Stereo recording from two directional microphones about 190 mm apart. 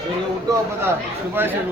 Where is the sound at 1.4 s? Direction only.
10° right (ahead or behind).